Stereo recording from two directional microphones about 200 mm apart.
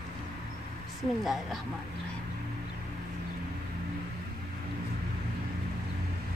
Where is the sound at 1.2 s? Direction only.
Centre (ahead or behind).